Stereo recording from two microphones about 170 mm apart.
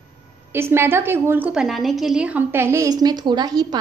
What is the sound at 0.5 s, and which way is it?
A woman's voice, 15° right (ahead or behind).